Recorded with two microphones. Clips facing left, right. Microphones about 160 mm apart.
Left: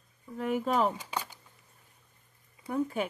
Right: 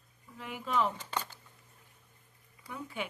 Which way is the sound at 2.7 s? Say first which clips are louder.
Left 9 dB; 45° left (ahead or behind).